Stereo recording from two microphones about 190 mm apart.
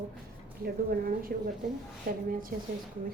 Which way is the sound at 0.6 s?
50° right (ahead or behind).